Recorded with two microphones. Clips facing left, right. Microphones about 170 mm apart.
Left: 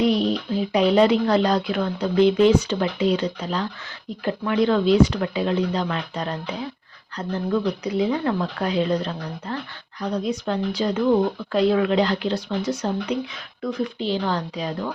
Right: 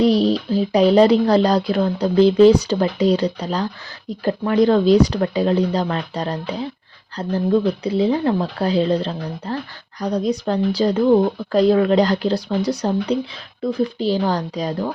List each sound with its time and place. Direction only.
0.0 s speech: 35° right (ahead or behind)